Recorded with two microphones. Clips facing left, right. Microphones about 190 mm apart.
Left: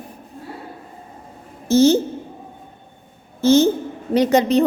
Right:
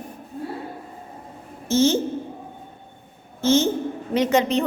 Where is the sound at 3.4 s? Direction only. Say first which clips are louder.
Left 5 dB; 35° left (ahead or behind).